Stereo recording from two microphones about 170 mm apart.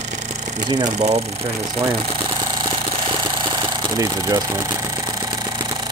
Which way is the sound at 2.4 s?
25° right (ahead or behind).